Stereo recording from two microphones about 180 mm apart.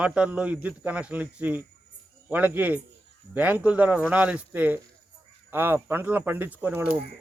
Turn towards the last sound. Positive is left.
turn(degrees=-10)  # may be behind; listen again after turning